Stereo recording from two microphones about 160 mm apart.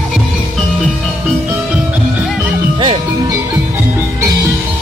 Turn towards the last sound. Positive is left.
turn(degrees=-30)  # may be behind; listen again after turning